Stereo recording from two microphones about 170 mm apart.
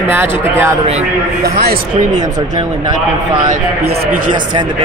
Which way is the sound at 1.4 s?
65° right (ahead or behind).